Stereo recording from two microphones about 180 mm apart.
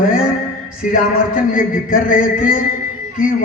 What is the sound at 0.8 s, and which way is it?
A man's voice, 50° left (ahead or behind).